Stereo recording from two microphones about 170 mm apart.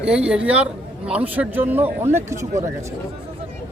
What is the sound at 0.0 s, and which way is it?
A man's voice, 5° right (ahead or behind).